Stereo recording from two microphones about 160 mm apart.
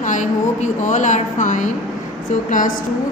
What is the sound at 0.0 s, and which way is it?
A woman's voice, 50° left (ahead or behind).